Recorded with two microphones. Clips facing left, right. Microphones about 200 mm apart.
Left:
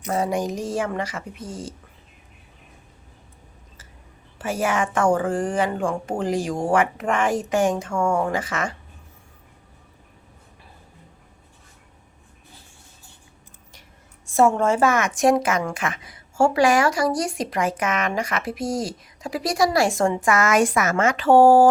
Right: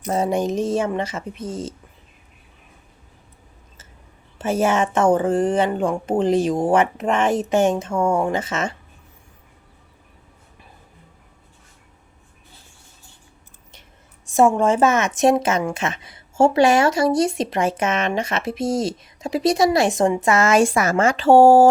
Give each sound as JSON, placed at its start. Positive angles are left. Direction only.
{"t": 0.1, "sound": "a woman's voice", "side_deg": -25}
{"t": 4.4, "sound": "a woman's voice", "side_deg": -25}
{"t": 14.3, "sound": "a woman's voice", "side_deg": -15}